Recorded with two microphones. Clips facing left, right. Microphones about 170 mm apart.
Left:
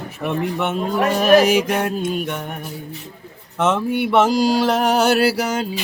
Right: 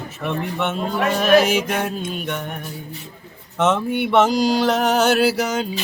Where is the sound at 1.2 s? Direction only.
40° left (ahead or behind).